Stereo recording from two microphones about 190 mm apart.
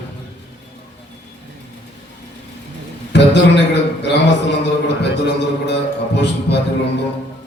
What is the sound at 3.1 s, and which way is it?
A man's voice, 65° left (ahead or behind).